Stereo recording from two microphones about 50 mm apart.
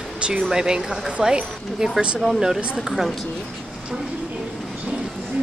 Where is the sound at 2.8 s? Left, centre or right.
Centre.